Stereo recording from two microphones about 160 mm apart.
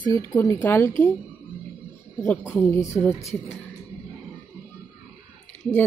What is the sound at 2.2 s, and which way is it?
Speech, 10° left (ahead or behind).